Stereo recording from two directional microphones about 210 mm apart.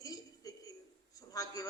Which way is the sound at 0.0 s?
15° left (ahead or behind).